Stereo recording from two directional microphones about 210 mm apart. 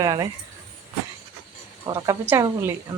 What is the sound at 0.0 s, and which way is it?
Speech, 15° right (ahead or behind).